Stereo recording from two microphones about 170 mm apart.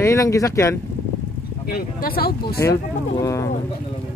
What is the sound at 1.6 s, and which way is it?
Speech, 60° left (ahead or behind).